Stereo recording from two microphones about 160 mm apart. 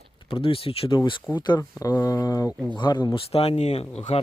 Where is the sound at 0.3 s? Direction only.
35° left (ahead or behind).